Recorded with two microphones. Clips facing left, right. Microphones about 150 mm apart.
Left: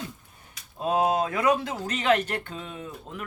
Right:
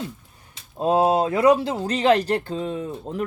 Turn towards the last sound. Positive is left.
turn(degrees=-35)  # may be behind; listen again after turning